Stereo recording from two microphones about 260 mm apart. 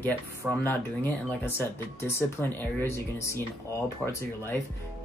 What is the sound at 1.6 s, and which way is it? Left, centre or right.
Speech, centre.